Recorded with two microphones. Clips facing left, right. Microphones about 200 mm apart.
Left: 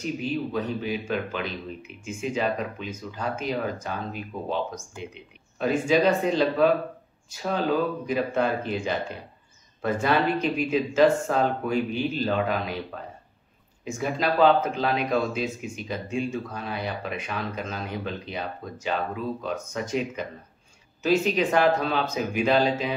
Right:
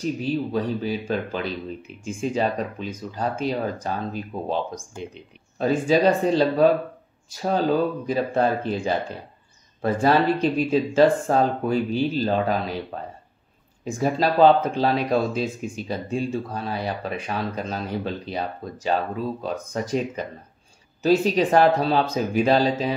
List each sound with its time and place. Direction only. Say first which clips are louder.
0.0 s speech: right 3 dB; 35° right (ahead or behind)
13.8 s speech: right 4 dB; 35° right (ahead or behind)